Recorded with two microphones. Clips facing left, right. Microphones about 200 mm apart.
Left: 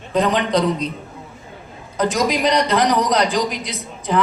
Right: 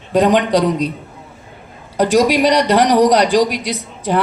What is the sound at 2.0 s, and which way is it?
A man's voice, 75° right (ahead or behind).